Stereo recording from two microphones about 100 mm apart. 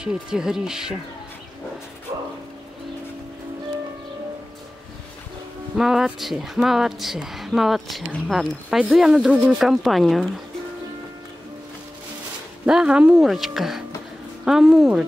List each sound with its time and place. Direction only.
0.0 s speech: 10° right (ahead or behind)
2.1 s music: 35° right (ahead or behind)
5.8 s speech: 5° right (ahead or behind)
12.6 s speech: 10° right (ahead or behind)